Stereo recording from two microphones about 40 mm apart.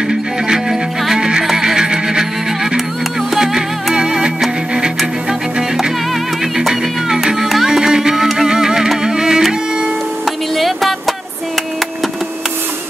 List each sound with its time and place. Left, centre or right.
0.1 s music: centre
6.4 s music: centre
7.4 s music: centre
7.7 s music: centre
10.5 s music: centre